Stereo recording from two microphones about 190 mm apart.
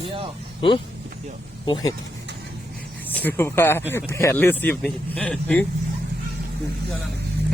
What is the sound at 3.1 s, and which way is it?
Speech, 10° left (ahead or behind).